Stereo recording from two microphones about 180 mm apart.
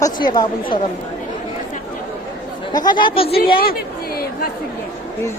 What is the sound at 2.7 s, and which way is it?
Speech, 25° left (ahead or behind).